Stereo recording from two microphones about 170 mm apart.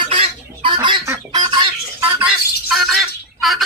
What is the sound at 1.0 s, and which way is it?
Fowl, 15° right (ahead or behind).